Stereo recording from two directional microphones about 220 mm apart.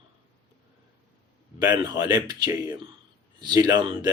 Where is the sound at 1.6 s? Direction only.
15° right (ahead or behind).